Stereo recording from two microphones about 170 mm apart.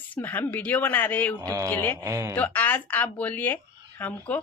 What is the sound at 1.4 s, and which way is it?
Speech, 20° right (ahead or behind).